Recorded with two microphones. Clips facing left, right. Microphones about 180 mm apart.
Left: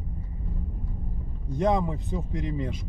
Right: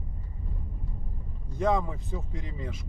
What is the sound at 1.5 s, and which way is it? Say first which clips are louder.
Speech: left 2 dB; 20° left (ahead or behind).